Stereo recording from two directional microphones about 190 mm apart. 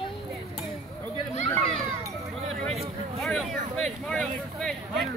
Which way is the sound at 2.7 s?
30° right (ahead or behind).